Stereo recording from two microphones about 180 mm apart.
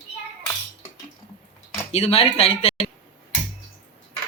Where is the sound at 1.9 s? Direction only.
35° left (ahead or behind).